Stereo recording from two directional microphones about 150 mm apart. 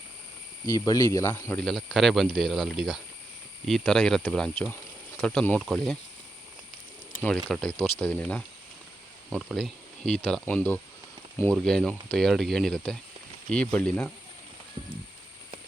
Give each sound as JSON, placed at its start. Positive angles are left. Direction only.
{"t": 0.6, "sound": "speech", "side_deg": 25}
{"t": 1.6, "sound": "speech", "side_deg": 0}
{"t": 7.4, "sound": "speech", "side_deg": 5}